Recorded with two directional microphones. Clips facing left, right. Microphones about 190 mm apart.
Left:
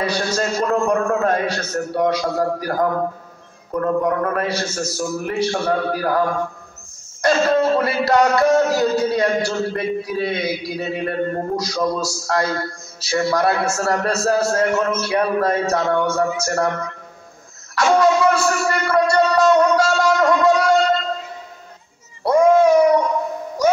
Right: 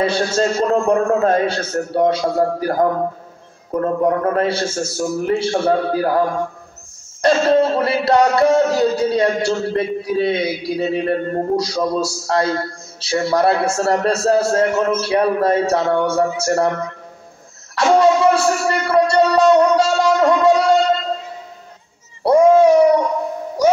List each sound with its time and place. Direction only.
0.0 s music: 25° right (ahead or behind)
3.8 s music: 30° right (ahead or behind)
13.0 s a man's voice: 30° right (ahead or behind)
17.7 s a man's voice: 30° right (ahead or behind)
19.1 s music: 30° right (ahead or behind)
22.2 s a sound: 35° right (ahead or behind)